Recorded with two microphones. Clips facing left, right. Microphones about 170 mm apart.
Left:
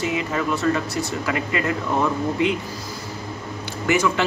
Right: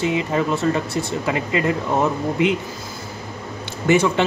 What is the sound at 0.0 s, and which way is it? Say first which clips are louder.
Speech: right 3 dB; 25° right (ahead or behind).